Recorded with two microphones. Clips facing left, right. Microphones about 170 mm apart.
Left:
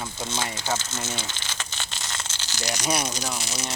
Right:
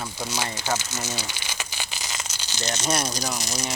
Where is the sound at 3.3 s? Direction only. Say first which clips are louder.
Right 2 dB; 40° right (ahead or behind).